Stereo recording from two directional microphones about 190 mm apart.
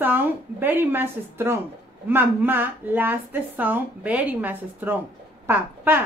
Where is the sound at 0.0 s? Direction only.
10° right (ahead or behind).